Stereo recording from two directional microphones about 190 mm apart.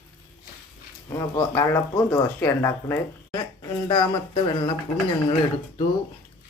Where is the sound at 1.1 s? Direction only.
15° left (ahead or behind).